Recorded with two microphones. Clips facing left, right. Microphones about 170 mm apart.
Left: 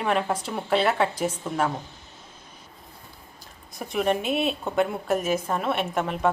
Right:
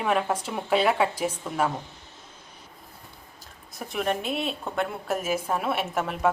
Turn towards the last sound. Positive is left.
turn(degrees=-5)  # may be behind; listen again after turning